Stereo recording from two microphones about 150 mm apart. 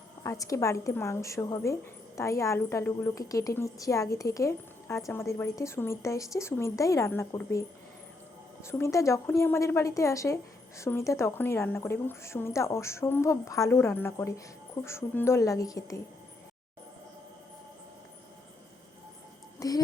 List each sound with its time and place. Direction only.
0.2 s a woman's voice: 20° left (ahead or behind)
8.6 s a woman's voice: 20° left (ahead or behind)
19.5 s a sound: 25° left (ahead or behind)